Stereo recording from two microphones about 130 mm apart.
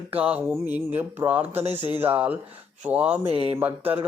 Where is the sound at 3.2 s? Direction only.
50° right (ahead or behind).